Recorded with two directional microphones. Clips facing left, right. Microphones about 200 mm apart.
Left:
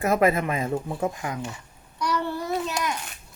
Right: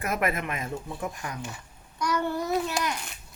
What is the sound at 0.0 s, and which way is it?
Speech, 30° left (ahead or behind).